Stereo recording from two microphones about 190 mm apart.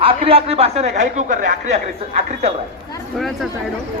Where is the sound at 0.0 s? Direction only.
30° right (ahead or behind).